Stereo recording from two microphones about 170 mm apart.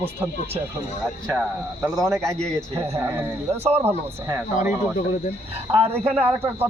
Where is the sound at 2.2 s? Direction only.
5° left (ahead or behind).